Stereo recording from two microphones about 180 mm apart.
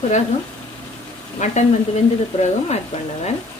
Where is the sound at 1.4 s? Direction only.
40° left (ahead or behind).